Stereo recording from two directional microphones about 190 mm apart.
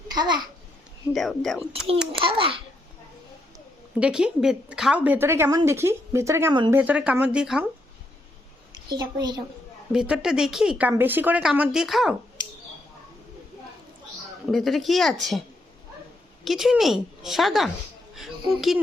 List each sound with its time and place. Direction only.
0.1 s a child's voice: 25° right (ahead or behind)
1.1 s speech: centre (ahead or behind)
2.1 s a child's voice: 25° right (ahead or behind)
4.0 s a woman's voice: 5° right (ahead or behind)
8.9 s a child's voice: 20° right (ahead or behind)
9.9 s speech: 5° right (ahead or behind)
14.4 s speech: centre (ahead or behind)
16.4 s speech: centre (ahead or behind)
18.1 s music: centre (ahead or behind)